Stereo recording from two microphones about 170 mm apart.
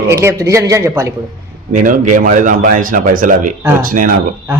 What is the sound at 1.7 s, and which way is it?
Speech, 50° right (ahead or behind).